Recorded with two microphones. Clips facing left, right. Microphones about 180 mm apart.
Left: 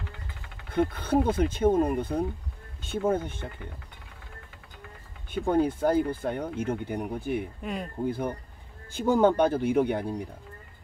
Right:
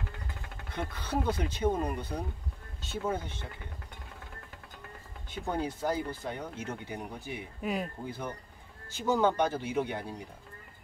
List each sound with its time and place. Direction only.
0.7 s speech: 55° left (ahead or behind)
5.3 s speech: 55° left (ahead or behind)
7.6 s speech: 5° right (ahead or behind)
8.0 s speech: 55° left (ahead or behind)